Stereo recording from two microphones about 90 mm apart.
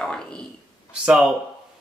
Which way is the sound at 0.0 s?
5° left (ahead or behind).